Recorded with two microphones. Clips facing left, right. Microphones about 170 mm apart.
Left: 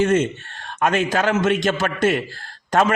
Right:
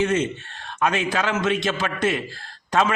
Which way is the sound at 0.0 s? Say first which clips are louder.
Left 4 dB; 45° left (ahead or behind).